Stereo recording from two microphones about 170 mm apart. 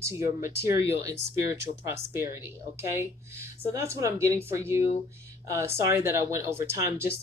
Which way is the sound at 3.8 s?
15° right (ahead or behind).